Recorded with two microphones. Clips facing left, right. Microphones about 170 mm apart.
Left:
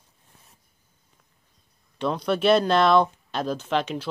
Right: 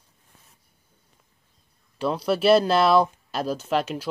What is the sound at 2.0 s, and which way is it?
Speech, 5° right (ahead or behind).